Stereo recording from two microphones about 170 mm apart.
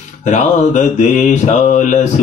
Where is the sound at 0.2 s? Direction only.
45° left (ahead or behind).